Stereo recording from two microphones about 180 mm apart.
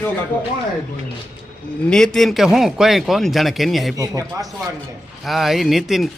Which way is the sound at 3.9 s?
20° right (ahead or behind).